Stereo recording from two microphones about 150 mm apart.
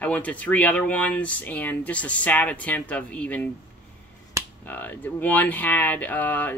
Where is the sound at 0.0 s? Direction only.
10° left (ahead or behind).